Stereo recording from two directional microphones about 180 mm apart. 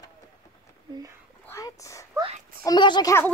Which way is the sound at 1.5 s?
15° left (ahead or behind).